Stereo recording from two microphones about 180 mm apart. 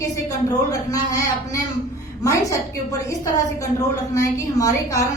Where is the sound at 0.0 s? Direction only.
20° left (ahead or behind).